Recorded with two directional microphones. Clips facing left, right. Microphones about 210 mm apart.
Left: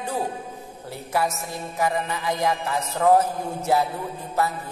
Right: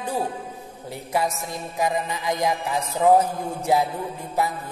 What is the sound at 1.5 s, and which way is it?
A man's voice, 15° right (ahead or behind).